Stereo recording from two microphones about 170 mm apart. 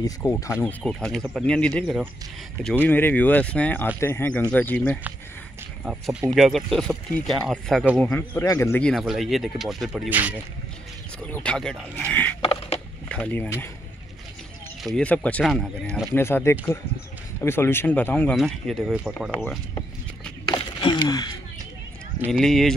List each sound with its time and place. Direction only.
0.0 s speech: 15° left (ahead or behind)
6.3 s speech: centre (ahead or behind)
10.0 s speech: 10° right (ahead or behind)
11.2 s speech: 10° left (ahead or behind)
12.4 s a sound: 35° left (ahead or behind)
13.1 s speech: 10° left (ahead or behind)
15.0 s speech: 10° left (ahead or behind)
16.2 s speech: 15° left (ahead or behind); by 19.3 s 5° right (ahead or behind)
20.5 s a sound: 30° left (ahead or behind)
22.3 s speech: centre (ahead or behind)